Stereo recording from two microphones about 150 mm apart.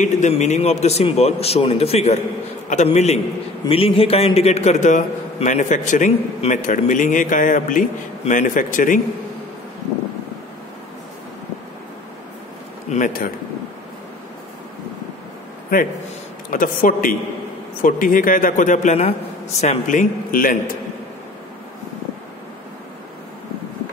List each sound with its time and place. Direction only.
0.0 s a man's voice: 50° left (ahead or behind)
12.9 s a man's voice: 65° left (ahead or behind)
16.4 s a man's voice: 65° left (ahead or behind)